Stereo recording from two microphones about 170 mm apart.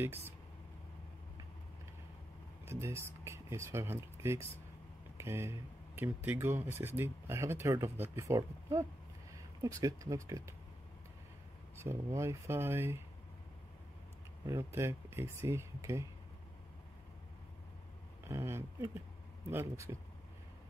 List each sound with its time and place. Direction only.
0.0 s speech: 15° right (ahead or behind)
2.6 s speech: 15° right (ahead or behind)
11.7 s speech: 15° right (ahead or behind)
14.4 s speech: 15° right (ahead or behind)
18.3 s speech: 15° right (ahead or behind)